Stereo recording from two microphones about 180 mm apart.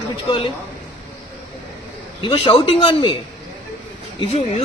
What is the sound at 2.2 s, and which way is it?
Speech, 30° left (ahead or behind).